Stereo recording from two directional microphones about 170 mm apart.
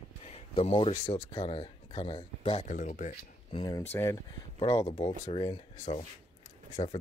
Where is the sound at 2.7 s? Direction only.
50° left (ahead or behind).